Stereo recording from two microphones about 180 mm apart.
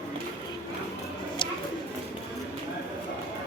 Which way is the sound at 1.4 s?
25° left (ahead or behind).